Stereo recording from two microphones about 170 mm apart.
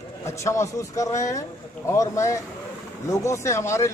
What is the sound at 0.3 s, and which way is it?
A man's voice, 15° left (ahead or behind).